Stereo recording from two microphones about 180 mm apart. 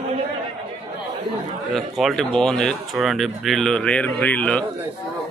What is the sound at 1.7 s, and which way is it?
Speech, centre (ahead or behind).